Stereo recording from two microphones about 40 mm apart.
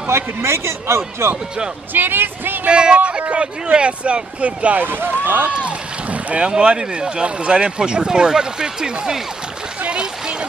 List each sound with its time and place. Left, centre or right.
0.0 s a man's voice: right
2.0 s speech: right
2.7 s speech: right
4.7 s speech: right
6.3 s speech: right
9.8 s a sound: right